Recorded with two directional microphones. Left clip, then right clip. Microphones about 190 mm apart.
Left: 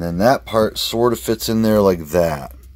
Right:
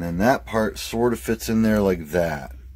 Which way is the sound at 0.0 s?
25° left (ahead or behind).